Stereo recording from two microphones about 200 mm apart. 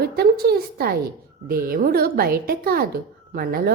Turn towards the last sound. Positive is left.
turn(degrees=-45)  # may be behind; listen again after turning